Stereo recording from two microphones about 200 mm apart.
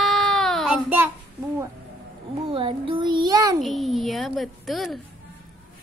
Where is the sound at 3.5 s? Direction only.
Centre (ahead or behind).